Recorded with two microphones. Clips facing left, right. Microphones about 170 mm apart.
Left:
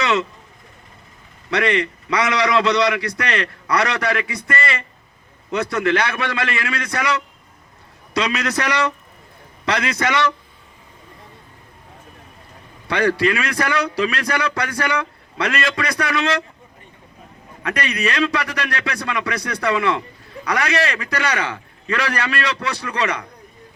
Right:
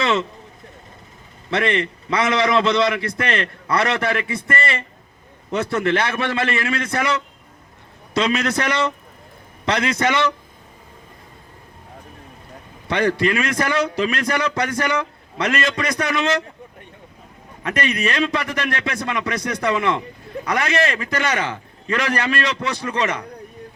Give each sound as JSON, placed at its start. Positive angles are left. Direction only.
{"t": 0.0, "sound": "a sound", "side_deg": -25}
{"t": 1.5, "sound": "a man's voice", "side_deg": -25}
{"t": 9.6, "sound": "a man's voice", "side_deg": -25}
{"t": 12.9, "sound": "a man's voice", "side_deg": -20}
{"t": 17.6, "sound": "a man's voice", "side_deg": -25}